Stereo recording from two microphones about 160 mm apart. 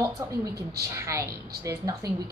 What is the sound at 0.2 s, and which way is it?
A woman's voice, 20° right (ahead or behind).